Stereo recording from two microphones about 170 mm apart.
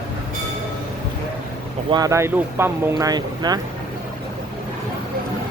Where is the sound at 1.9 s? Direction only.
20° right (ahead or behind).